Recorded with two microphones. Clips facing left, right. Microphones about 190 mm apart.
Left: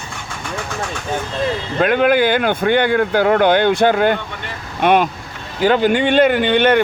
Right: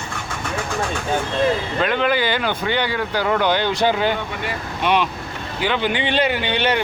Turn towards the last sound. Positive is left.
turn(degrees=55)  # may be behind; listen again after turning